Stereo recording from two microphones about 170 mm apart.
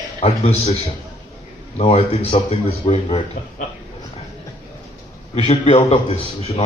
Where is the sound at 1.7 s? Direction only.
35° left (ahead or behind).